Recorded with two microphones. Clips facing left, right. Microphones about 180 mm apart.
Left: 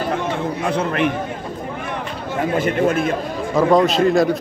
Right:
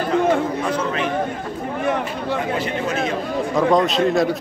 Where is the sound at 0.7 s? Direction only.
60° left (ahead or behind).